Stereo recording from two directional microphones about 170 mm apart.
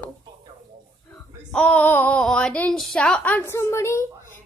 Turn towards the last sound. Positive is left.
turn(degrees=15)  # may be behind; listen again after turning